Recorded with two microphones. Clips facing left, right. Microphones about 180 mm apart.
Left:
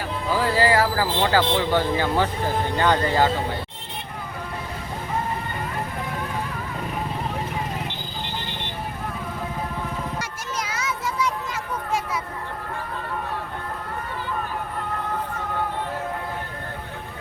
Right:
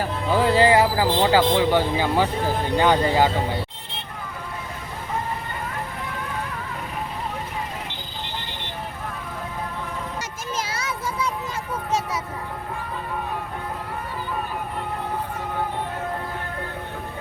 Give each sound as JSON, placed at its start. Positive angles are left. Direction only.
{"t": 0.3, "sound": "speech", "side_deg": -25}
{"t": 10.6, "sound": "children playing", "side_deg": -30}